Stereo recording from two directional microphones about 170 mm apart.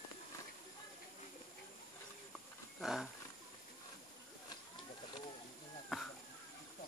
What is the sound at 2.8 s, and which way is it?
Speech, centre (ahead or behind).